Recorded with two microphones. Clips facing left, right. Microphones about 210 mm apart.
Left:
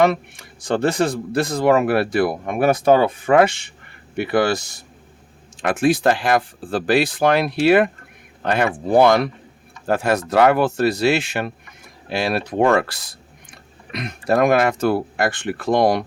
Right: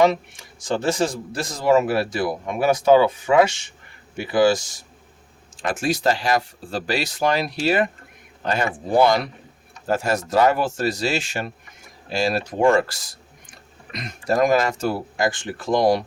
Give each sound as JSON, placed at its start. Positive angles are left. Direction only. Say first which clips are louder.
{"t": 0.0, "sound": "speech", "louder": "left 1 dB", "side_deg": 55}